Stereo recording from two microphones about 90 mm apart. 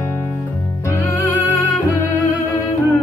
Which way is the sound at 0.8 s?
25° left (ahead or behind).